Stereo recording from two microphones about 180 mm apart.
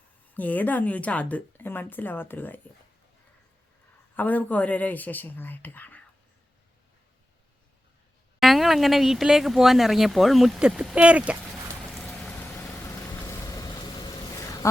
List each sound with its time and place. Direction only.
0.3 s speech: 10° left (ahead or behind)
4.2 s speech: 10° left (ahead or behind)
8.4 s speech: centre (ahead or behind)
11.9 s vehicle: centre (ahead or behind); by 14.7 s 15° left (ahead or behind)